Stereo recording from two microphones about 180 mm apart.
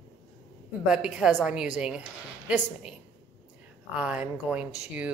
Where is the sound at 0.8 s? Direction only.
5° right (ahead or behind).